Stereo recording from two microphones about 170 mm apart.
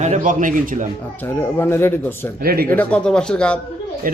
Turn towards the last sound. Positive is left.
turn(degrees=-55)  # may be behind; listen again after turning